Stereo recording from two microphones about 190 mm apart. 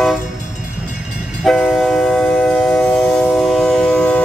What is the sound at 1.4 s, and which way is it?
Train, centre (ahead or behind).